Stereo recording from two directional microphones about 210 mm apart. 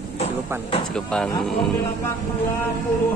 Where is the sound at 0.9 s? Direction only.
5° left (ahead or behind).